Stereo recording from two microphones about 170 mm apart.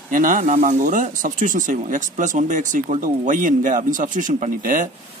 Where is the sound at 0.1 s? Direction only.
50° right (ahead or behind).